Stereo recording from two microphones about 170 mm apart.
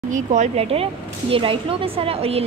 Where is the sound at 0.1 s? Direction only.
45° right (ahead or behind).